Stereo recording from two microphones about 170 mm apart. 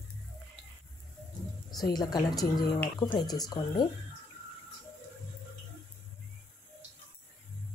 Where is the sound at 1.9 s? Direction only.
25° left (ahead or behind).